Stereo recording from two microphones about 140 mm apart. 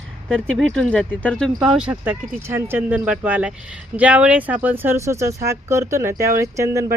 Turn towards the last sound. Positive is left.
turn(degrees=-20)  # may be behind; listen again after turning